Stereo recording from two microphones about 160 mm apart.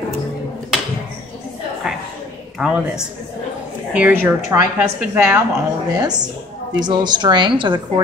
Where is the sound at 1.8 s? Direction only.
Centre (ahead or behind).